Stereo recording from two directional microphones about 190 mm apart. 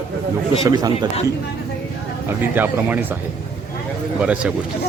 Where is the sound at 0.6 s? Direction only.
20° right (ahead or behind).